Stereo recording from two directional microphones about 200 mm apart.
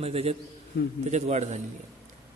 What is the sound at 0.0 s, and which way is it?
A man's voice, 30° right (ahead or behind).